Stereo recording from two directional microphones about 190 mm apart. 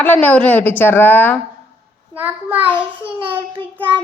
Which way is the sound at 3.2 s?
25° right (ahead or behind).